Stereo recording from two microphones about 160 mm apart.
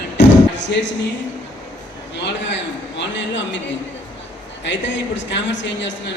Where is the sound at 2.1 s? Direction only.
90° left.